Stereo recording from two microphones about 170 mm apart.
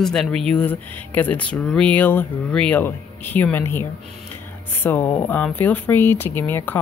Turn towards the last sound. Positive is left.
turn(degrees=10)  # may be behind; listen again after turning